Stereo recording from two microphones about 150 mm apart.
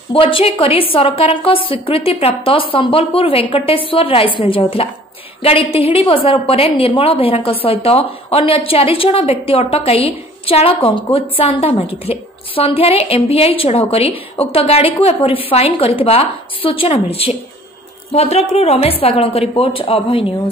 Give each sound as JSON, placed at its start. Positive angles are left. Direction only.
{"t": 0.1, "sound": "a woman's voice", "side_deg": 40}